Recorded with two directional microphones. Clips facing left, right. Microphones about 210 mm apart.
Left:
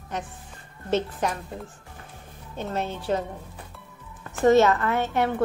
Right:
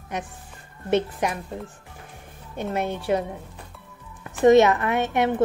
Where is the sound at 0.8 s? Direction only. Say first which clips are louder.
Right 2 dB; 10° right (ahead or behind).